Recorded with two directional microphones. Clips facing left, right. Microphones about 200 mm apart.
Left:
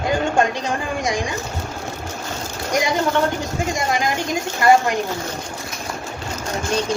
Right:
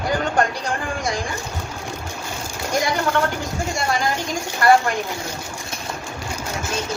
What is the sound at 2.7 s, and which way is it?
Speech, 15° left (ahead or behind).